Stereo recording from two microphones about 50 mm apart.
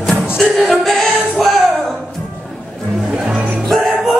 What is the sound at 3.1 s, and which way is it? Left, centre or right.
Music, centre.